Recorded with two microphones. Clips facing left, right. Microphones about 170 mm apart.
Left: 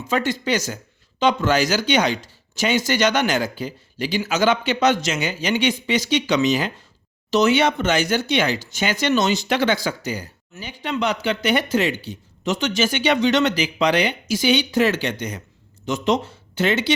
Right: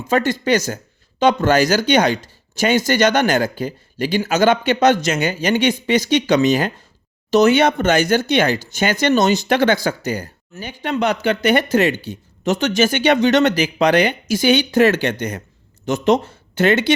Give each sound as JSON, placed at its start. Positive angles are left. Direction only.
{"t": 0.1, "sound": "speech", "side_deg": -50}